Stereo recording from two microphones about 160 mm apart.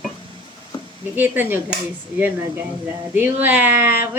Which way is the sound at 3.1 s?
10° right (ahead or behind).